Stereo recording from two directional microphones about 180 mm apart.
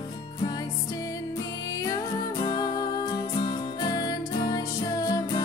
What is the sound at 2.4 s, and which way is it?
Music, 20° left (ahead or behind).